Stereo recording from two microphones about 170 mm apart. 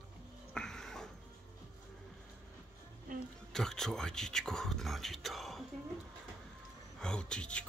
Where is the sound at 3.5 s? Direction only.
5° left (ahead or behind).